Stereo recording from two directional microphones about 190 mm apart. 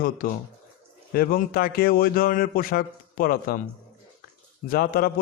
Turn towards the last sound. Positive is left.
turn(degrees=50)  # may be behind; listen again after turning